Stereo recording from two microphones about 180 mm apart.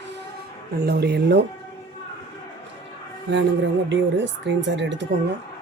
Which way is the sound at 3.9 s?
85° right.